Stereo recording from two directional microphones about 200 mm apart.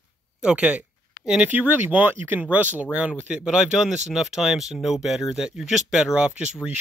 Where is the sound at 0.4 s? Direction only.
5° right (ahead or behind).